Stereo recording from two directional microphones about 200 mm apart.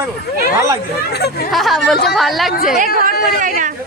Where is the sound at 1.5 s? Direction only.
Centre (ahead or behind).